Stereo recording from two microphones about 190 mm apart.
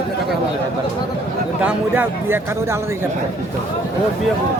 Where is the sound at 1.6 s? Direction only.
10° right (ahead or behind).